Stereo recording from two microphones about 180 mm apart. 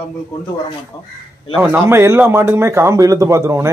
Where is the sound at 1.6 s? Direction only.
10° right (ahead or behind).